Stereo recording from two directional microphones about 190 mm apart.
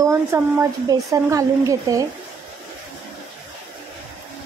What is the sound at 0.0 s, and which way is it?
Speech, 15° right (ahead or behind).